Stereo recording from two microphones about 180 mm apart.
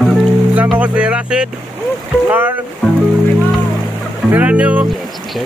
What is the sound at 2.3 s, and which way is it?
Music, 10° right (ahead or behind).